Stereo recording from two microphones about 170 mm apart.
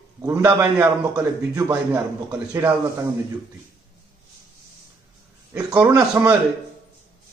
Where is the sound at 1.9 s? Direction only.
10° right (ahead or behind).